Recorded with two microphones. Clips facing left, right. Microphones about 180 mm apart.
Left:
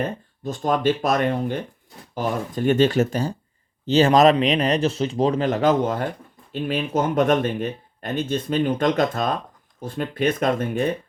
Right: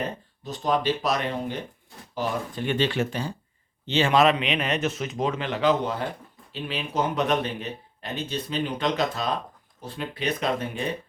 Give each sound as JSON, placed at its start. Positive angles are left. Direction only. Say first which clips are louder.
{"t": 0.4, "sound": "speech", "louder": "left 4 dB", "side_deg": 50}